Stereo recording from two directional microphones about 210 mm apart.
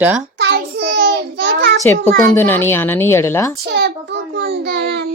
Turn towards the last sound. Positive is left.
turn(degrees=-55)  # may be behind; listen again after turning